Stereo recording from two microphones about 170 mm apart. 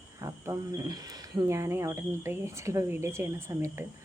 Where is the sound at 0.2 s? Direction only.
20° right (ahead or behind).